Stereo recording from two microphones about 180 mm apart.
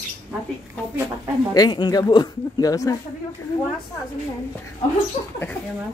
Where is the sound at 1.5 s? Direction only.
25° left (ahead or behind).